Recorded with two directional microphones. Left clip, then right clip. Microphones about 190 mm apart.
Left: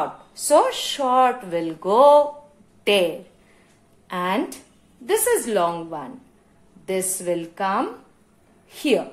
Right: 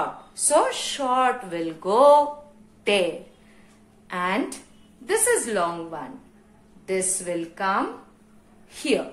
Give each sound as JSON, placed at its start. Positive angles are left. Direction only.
{"t": 0.4, "sound": "a woman's voice", "side_deg": 40}